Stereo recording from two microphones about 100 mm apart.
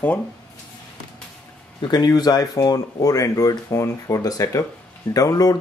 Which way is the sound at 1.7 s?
45° left (ahead or behind).